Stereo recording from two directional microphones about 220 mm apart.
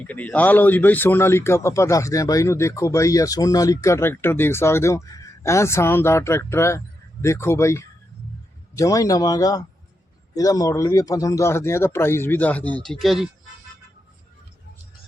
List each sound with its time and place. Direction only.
0.1 s a man's voice: 5° left (ahead or behind)